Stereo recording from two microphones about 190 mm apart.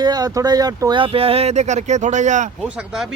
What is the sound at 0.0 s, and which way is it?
Speech, 20° right (ahead or behind).